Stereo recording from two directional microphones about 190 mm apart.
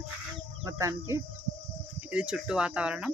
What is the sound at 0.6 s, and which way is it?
Speech, 15° right (ahead or behind).